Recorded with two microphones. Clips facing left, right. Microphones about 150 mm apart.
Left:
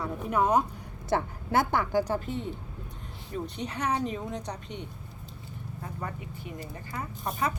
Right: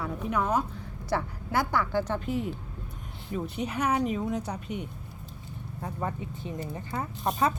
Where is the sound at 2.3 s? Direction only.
5° right (ahead or behind).